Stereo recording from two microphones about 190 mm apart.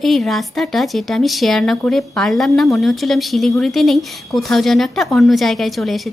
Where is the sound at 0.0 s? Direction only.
Centre (ahead or behind).